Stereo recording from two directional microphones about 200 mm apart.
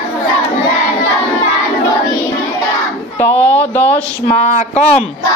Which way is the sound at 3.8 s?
30° left (ahead or behind).